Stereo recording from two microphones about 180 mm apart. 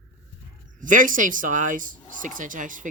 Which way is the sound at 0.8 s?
45° right (ahead or behind).